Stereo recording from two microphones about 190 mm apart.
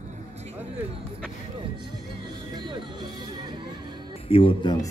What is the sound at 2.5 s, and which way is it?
Speech, 25° right (ahead or behind).